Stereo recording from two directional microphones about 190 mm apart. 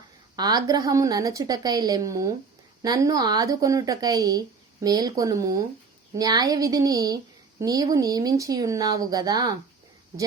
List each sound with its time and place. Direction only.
0.3 s speech: 20° right (ahead or behind)